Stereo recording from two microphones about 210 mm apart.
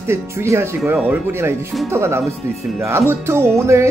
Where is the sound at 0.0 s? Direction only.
10° right (ahead or behind).